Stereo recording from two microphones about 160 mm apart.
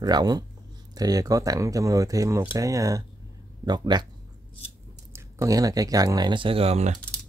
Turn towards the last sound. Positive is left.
turn(degrees=-40)  # may be behind; listen again after turning